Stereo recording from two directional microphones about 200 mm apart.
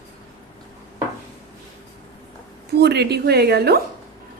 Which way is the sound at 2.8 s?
55° right (ahead or behind).